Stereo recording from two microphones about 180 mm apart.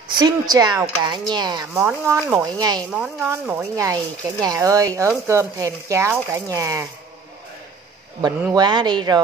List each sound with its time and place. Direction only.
0.1 s speech: 25° right (ahead or behind)
1.7 s speech: 10° right (ahead or behind)
2.9 s speech: 5° right (ahead or behind)
8.5 s speech: 25° right (ahead or behind)